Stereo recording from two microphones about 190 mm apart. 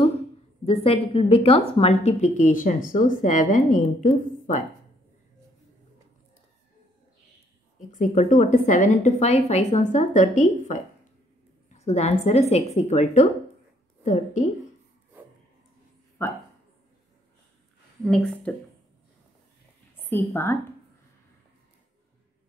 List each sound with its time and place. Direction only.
0.7 s a woman's voice: 30° left (ahead or behind)
7.9 s a woman's voice: 40° left (ahead or behind)
16.2 s speech: 15° left (ahead or behind)
18.0 s speech: 5° left (ahead or behind)
20.0 s a woman's voice: 10° left (ahead or behind)